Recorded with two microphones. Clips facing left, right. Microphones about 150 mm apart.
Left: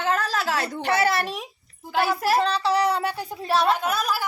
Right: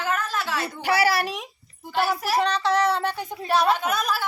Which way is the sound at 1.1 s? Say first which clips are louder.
Even; centre (ahead or behind).